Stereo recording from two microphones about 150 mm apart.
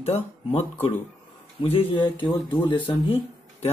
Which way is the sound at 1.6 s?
35° left (ahead or behind).